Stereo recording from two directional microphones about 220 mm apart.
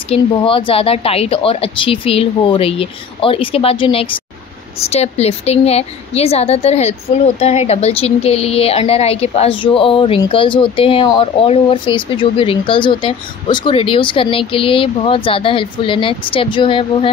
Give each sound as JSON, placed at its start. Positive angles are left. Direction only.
{"t": 0.1, "sound": "a woman's voice", "side_deg": 25}